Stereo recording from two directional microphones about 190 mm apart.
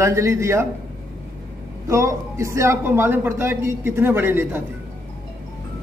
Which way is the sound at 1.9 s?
15° right (ahead or behind).